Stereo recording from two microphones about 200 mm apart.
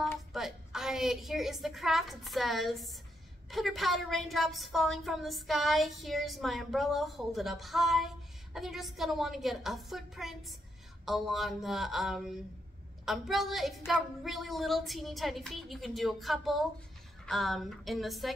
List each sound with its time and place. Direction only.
0.3 s a woman's voice: centre (ahead or behind)